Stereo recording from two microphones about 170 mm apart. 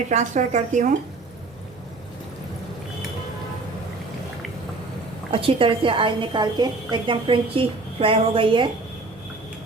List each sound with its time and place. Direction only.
0.1 s speech: 45° right (ahead or behind)
5.3 s a woman's voice: 35° right (ahead or behind)